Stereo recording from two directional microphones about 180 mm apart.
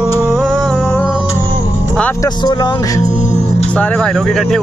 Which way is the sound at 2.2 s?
25° left (ahead or behind).